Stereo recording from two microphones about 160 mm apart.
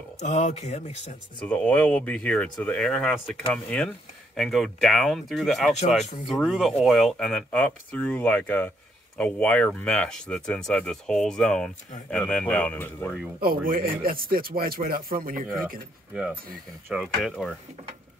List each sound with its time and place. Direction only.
0.2 s speech: 45° left (ahead or behind)
1.4 s speech: 10° left (ahead or behind)
13.4 s speech: 65° right (ahead or behind)
16.9 s speech: centre (ahead or behind)